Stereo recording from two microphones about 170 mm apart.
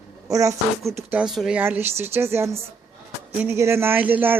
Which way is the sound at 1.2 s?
Centre (ahead or behind).